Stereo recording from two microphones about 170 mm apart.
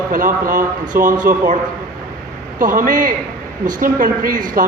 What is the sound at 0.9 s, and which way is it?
Speech, 15° right (ahead or behind).